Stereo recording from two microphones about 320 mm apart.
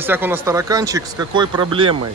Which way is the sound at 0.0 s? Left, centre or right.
Centre.